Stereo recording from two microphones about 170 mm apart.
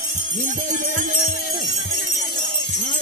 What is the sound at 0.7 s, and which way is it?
Music, 50° right (ahead or behind).